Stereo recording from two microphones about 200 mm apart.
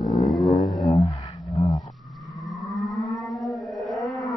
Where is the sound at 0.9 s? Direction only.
20° left (ahead or behind).